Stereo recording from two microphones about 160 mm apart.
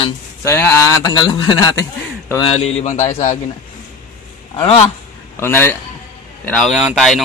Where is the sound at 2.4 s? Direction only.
40° left (ahead or behind).